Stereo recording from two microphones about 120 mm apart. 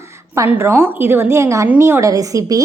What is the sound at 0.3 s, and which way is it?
A woman's voice, 20° right (ahead or behind).